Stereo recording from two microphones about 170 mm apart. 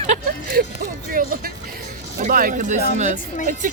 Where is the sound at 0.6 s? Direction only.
65° right (ahead or behind).